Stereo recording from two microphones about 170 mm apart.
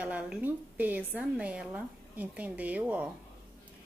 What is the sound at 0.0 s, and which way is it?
A woman's voice, 10° right (ahead or behind).